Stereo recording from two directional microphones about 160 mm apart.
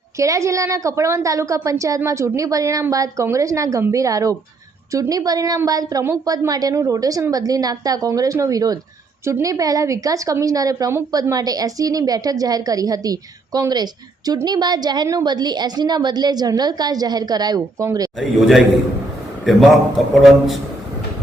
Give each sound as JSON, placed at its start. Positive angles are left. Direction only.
{"t": 0.2, "sound": "a woman's voice", "side_deg": -20}
{"t": 18.2, "sound": "a man's voice", "side_deg": 0}